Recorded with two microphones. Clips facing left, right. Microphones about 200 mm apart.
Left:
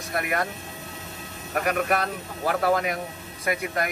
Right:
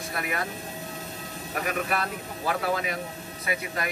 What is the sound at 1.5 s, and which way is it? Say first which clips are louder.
Speech: left 5 dB; 45° left (ahead or behind).